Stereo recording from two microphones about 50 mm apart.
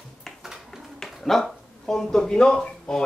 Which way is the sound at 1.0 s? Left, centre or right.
Centre.